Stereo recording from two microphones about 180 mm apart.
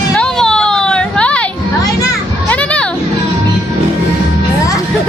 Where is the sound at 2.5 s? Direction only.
5° left (ahead or behind).